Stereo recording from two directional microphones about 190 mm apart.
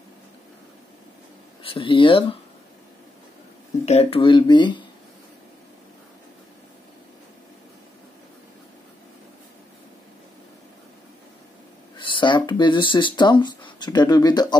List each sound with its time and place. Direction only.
1.6 s speech: 30° left (ahead or behind)
3.8 s speech: 35° left (ahead or behind)
12.0 s speech: 25° left (ahead or behind)